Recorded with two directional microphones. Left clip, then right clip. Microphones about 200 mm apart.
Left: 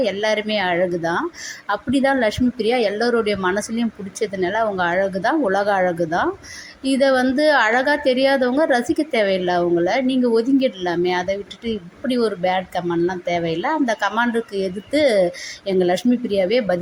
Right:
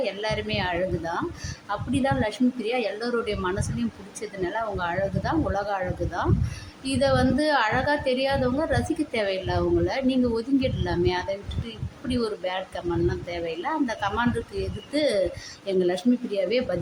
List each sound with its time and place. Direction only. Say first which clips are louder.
0.0 s a woman's voice: left 8 dB; 25° left (ahead or behind)